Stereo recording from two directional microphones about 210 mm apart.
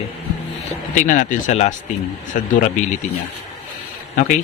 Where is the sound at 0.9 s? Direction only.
40° left (ahead or behind).